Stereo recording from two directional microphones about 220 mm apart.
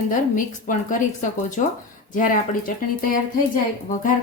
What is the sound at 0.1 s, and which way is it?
A woman's voice, 35° left (ahead or behind).